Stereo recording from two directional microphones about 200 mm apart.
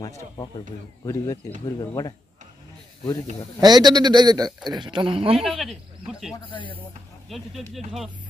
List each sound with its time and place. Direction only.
1.0 s speech: 15° left (ahead or behind)
3.6 s speech: 20° right (ahead or behind)
5.4 s speech: centre (ahead or behind)
6.5 s speech: 25° left (ahead or behind)
7.2 s speech: centre (ahead or behind)